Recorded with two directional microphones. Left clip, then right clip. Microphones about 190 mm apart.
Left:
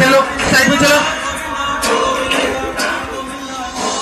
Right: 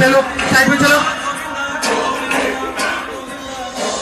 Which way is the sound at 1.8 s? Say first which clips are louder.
Left 2 dB; 25° right (ahead or behind).